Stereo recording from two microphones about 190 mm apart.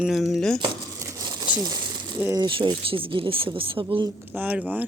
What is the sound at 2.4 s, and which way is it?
Speech, 25° right (ahead or behind).